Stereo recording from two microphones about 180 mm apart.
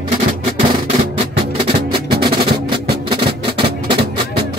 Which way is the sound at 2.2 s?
25° right (ahead or behind).